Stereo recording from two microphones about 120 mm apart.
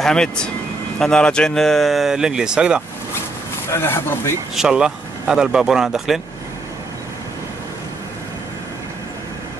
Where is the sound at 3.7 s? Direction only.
20° left (ahead or behind).